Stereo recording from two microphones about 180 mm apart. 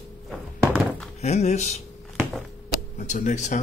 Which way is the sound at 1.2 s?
35° left (ahead or behind).